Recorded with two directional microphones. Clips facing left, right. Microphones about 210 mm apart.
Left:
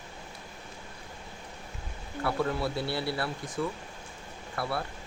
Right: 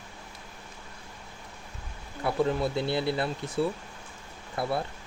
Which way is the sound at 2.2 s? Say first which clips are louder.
Right 3 dB; 20° right (ahead or behind).